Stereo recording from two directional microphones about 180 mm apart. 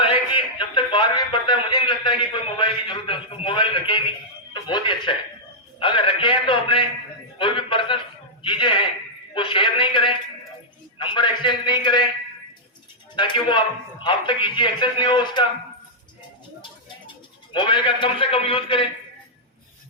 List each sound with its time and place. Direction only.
0.0 s a man's voice: 30° left (ahead or behind)
7.3 s a sound: 25° left (ahead or behind)
9.3 s a man's voice: 30° left (ahead or behind)
13.1 s speech: 25° left (ahead or behind)
17.5 s speech: 25° left (ahead or behind)